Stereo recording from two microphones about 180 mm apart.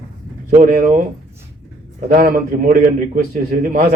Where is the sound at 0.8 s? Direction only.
50° right (ahead or behind).